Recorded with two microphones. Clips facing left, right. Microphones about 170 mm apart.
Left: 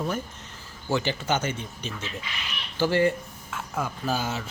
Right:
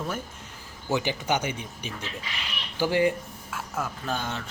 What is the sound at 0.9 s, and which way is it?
Speech, 15° right (ahead or behind).